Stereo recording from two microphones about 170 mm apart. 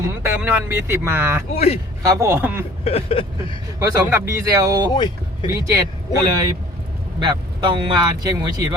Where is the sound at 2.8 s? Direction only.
35° left (ahead or behind).